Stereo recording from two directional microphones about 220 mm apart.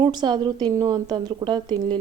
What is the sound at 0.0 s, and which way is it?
A woman's voice, 20° right (ahead or behind).